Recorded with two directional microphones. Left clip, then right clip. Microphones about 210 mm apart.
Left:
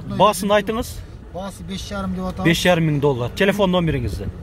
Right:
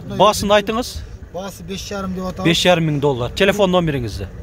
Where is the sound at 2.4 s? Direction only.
5° right (ahead or behind).